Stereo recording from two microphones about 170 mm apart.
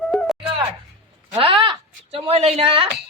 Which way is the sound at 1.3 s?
30° right (ahead or behind).